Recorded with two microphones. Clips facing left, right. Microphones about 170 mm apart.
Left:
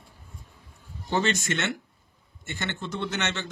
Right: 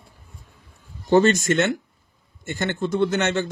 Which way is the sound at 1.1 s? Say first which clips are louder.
Right 10 dB; 45° right (ahead or behind).